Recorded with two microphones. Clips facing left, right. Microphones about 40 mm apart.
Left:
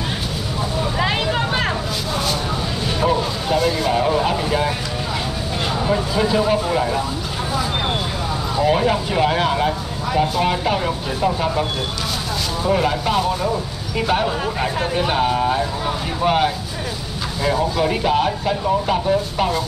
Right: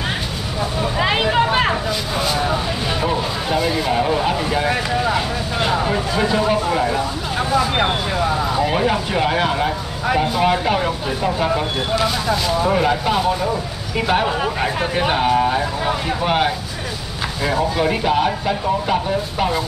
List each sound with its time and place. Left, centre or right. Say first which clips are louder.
0.9 s vehicle: right 5 dB; centre
3.0 s speech: left 1 dB; centre
5.7 s speech: even; centre
8.5 s speech: left 5 dB; centre
12.7 s speech: right 1 dB; centre